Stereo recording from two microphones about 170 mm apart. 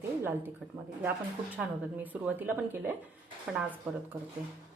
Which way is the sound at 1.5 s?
10° right (ahead or behind).